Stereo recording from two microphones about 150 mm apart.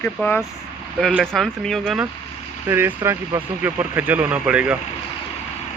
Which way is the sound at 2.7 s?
15° right (ahead or behind).